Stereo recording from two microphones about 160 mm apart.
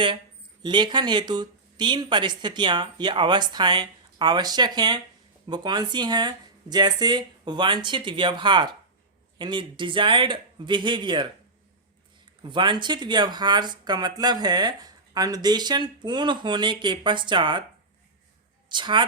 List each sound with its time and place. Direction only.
0.6 s speech: 30° right (ahead or behind)
12.4 s speech: 30° right (ahead or behind)
18.7 s speech: 30° right (ahead or behind)